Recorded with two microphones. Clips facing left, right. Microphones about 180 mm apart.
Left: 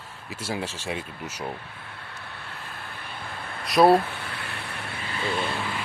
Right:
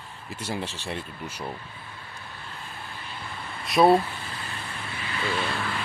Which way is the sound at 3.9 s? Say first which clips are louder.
Left 1 dB; 70° left (ahead or behind).